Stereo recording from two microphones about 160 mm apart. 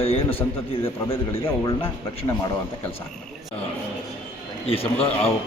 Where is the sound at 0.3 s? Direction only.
15° left (ahead or behind).